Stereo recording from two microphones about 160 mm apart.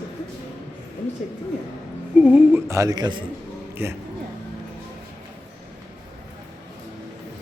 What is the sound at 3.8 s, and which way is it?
Speech, 15° right (ahead or behind).